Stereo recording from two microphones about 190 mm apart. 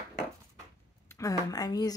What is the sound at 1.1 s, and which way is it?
Speech, 15° left (ahead or behind).